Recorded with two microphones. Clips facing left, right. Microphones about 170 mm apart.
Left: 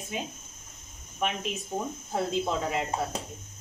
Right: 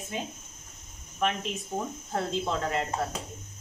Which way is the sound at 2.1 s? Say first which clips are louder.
Left 2 dB; 5° left (ahead or behind).